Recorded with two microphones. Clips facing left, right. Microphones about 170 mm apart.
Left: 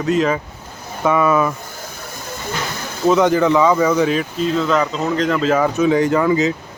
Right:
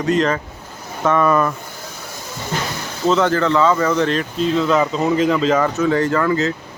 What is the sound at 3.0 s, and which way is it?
A man's voice, 15° left (ahead or behind).